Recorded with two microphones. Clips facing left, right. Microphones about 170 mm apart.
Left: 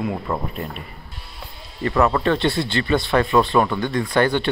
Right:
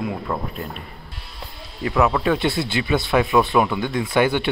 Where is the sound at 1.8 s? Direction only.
Centre (ahead or behind).